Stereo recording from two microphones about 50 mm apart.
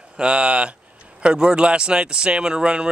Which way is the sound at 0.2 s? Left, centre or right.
Right.